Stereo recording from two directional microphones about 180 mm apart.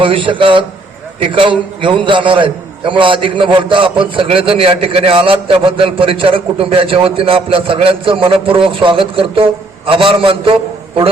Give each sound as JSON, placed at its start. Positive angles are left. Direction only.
{"t": 0.0, "sound": "a man's voice", "side_deg": -30}